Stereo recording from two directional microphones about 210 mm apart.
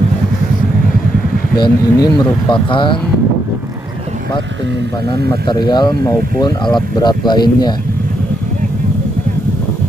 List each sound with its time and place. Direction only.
1.6 s speech: 20° left (ahead or behind)
5.5 s speech: 20° left (ahead or behind)